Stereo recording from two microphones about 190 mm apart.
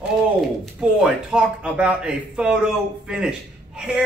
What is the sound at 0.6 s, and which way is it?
A man's voice, 5° right (ahead or behind).